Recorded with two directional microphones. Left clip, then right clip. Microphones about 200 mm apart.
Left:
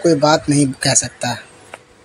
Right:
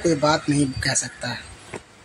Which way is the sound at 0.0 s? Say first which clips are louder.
Left 7 dB; 20° left (ahead or behind).